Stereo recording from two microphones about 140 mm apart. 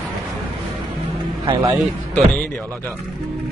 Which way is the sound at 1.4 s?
30° right (ahead or behind).